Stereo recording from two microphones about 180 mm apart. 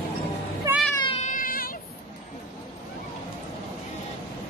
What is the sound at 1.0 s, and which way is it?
Cat, 40° left (ahead or behind).